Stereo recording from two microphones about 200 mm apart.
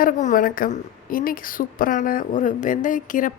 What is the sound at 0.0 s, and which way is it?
A woman's voice, 40° left (ahead or behind).